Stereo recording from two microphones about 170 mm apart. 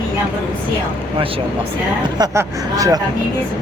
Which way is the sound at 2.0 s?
20° right (ahead or behind).